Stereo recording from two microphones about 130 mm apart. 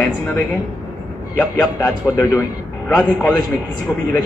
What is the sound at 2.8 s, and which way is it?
Speech, 5° left (ahead or behind).